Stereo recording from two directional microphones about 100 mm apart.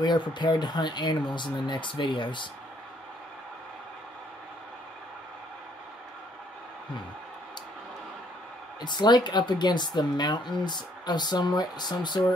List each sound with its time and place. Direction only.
0.0 s speech: 50° left (ahead or behind)
8.8 s speech: 45° left (ahead or behind)